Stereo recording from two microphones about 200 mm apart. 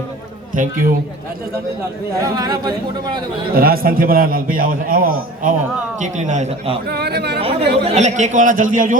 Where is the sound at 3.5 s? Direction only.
50° right (ahead or behind); by 6.8 s 30° right (ahead or behind).